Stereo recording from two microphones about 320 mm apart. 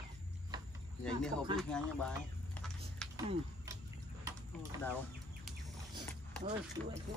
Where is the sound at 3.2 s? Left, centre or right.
Centre.